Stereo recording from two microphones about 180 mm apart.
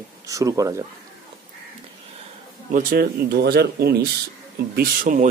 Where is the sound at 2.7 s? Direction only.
50° right (ahead or behind).